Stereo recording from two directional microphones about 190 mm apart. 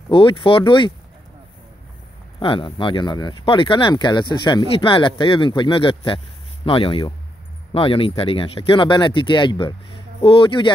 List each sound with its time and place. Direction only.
0.1 s speech: 25° left (ahead or behind)
2.4 s speech: 25° left (ahead or behind)